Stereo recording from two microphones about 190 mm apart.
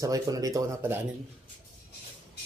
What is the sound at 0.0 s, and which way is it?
Speech, 20° right (ahead or behind).